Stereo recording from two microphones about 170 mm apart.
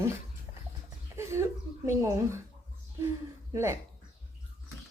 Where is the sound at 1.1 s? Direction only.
15° right (ahead or behind).